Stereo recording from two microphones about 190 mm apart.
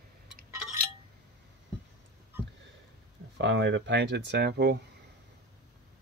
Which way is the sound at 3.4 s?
70° right (ahead or behind).